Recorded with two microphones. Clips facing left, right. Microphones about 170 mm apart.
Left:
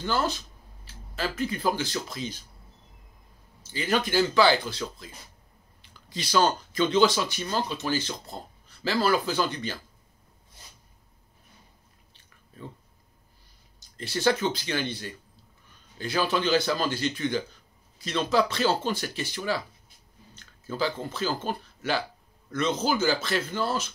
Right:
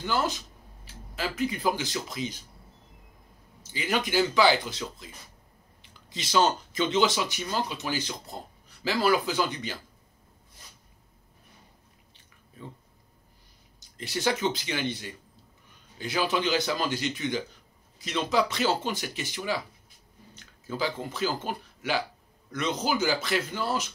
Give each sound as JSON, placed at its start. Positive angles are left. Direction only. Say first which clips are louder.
{"t": 0.0, "sound": "speech", "louder": "left 1 dB", "side_deg": -15}
{"t": 3.7, "sound": "speech", "louder": "left 2 dB", "side_deg": -15}
{"t": 13.7, "sound": "speech", "louder": "left 1 dB", "side_deg": -15}